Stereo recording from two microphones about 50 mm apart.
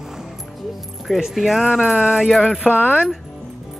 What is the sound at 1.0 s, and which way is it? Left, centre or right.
Speech, centre.